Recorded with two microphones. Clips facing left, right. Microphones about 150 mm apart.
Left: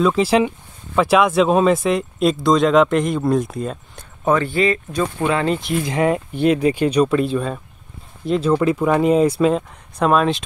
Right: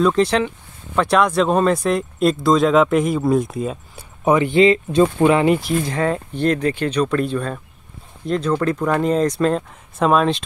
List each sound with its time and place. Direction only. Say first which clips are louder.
0.0 s speech: left 1 dB; 5° left (ahead or behind)
4.2 s speech: right 3 dB; 15° right (ahead or behind)
5.9 s speech: left 2 dB; 15° left (ahead or behind)